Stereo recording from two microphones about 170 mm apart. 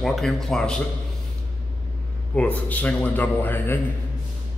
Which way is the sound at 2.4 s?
10° left (ahead or behind).